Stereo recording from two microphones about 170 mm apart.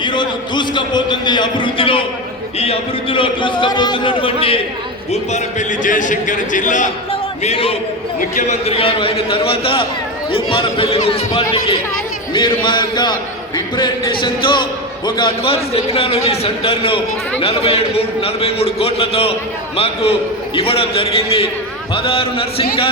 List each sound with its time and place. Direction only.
0.0 s a man's voice: 25° left (ahead or behind)
5.1 s a man's voice: 45° left (ahead or behind)
7.1 s a sound: 35° left (ahead or behind)
8.4 s a man's voice: 40° left (ahead or behind)
12.3 s a man's voice: 30° left (ahead or behind)